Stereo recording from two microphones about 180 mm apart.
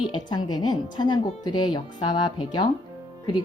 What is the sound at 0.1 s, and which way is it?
A woman's voice, 25° left (ahead or behind).